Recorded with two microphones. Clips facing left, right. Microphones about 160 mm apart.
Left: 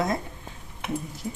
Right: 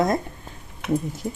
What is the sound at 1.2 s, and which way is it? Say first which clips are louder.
Speech: right 4 dB; 55° right (ahead or behind).